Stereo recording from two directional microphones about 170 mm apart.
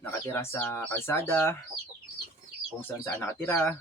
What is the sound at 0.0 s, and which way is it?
Speech, 15° left (ahead or behind).